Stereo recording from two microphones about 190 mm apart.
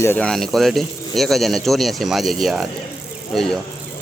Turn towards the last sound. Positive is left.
turn(degrees=0)  # may be behind; listen again after turning